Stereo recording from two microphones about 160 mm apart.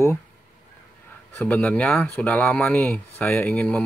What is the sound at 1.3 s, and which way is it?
Speech, 10° left (ahead or behind).